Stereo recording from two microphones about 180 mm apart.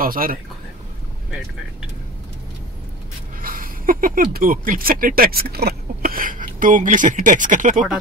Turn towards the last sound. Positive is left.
turn(degrees=-45)  # may be behind; listen again after turning